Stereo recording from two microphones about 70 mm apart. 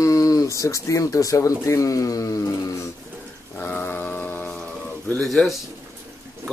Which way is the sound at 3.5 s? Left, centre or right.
Left.